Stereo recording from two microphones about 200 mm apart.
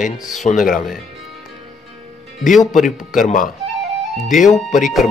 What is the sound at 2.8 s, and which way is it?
Speech, 40° left (ahead or behind).